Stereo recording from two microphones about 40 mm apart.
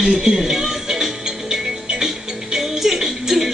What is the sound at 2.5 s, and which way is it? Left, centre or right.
Music, centre.